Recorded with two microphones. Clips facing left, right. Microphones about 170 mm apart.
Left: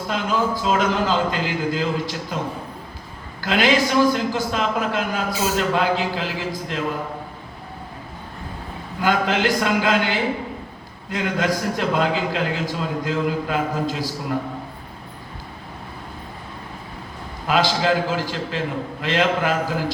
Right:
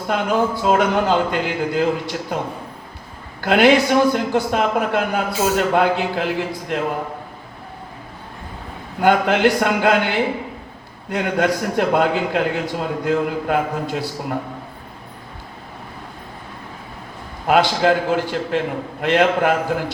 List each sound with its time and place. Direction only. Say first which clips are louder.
0.1 s a man's voice: right 4 dB; 60° right (ahead or behind)
3.4 s a man's voice: right 5 dB; 60° right (ahead or behind)
9.0 s a man's voice: right 5 dB; 60° right (ahead or behind)
17.4 s a man's voice: right 4 dB; 55° right (ahead or behind)